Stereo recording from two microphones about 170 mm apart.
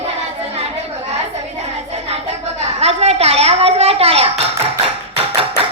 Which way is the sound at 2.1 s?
40° right (ahead or behind).